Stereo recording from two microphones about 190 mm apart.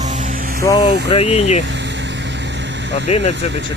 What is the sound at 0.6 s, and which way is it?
Speech, 20° left (ahead or behind).